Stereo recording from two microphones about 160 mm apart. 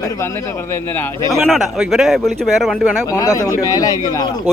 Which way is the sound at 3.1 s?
20° left (ahead or behind).